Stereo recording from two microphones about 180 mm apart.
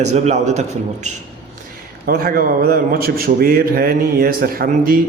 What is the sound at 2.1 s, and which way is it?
A man's voice, 55° right (ahead or behind).